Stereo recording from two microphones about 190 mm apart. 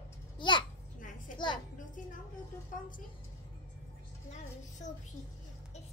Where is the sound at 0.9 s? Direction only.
45° left (ahead or behind).